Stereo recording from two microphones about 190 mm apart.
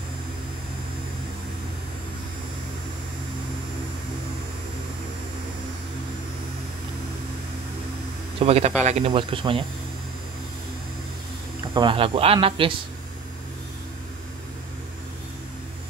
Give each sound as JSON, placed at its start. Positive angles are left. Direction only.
{"t": 8.4, "sound": "speech", "side_deg": -35}
{"t": 11.7, "sound": "speech", "side_deg": -25}